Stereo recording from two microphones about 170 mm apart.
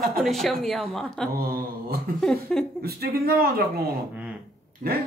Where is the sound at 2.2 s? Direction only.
Centre (ahead or behind).